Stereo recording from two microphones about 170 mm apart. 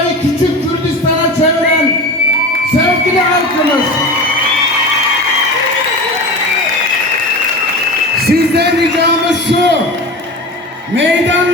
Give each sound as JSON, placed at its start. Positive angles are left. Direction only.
{"t": 8.3, "sound": "speech", "side_deg": -70}